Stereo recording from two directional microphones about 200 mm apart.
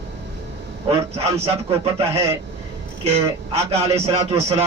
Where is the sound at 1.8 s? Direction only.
30° right (ahead or behind).